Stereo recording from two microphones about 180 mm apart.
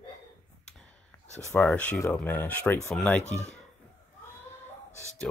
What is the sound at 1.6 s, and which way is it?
Speech, 10° left (ahead or behind).